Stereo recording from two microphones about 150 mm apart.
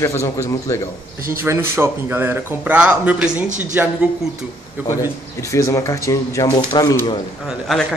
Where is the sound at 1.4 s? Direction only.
15° right (ahead or behind).